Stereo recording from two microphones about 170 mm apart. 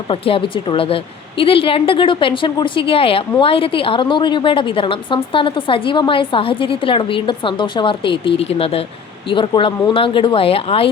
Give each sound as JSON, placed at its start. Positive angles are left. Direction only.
{"t": 0.1, "sound": "a woman's voice", "side_deg": 30}